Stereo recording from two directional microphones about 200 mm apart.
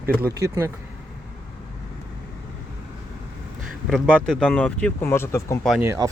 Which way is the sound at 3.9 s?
5° left (ahead or behind).